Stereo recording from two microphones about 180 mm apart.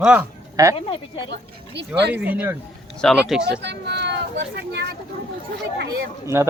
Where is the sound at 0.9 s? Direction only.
30° left (ahead or behind).